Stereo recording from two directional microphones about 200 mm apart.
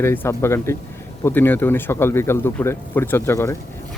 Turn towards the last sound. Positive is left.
turn(degrees=15)  # may be behind; listen again after turning